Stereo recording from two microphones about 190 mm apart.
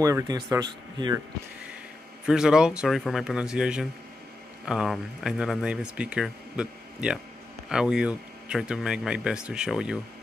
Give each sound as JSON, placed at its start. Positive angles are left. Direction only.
{"t": 0.0, "sound": "speech", "side_deg": -15}
{"t": 2.2, "sound": "speech", "side_deg": -5}